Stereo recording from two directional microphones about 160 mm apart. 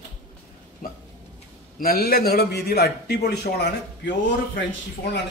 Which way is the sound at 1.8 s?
65° left (ahead or behind).